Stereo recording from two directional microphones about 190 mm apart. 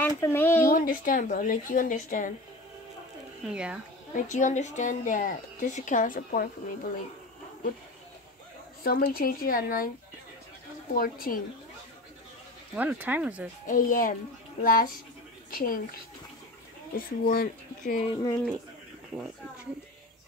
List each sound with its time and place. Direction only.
0.0 s speech: 10° left (ahead or behind)
0.7 s a woman's voice: 45° left (ahead or behind)
3.4 s speech: 5° right (ahead or behind)
4.1 s speech: 40° left (ahead or behind)
8.8 s a woman's voice: 50° left (ahead or behind)
11.0 s a woman's voice: 50° left (ahead or behind)
12.7 s speech: 10° right (ahead or behind)
13.7 s a woman's voice: 45° left (ahead or behind)
18.1 s speech: 20° left (ahead or behind)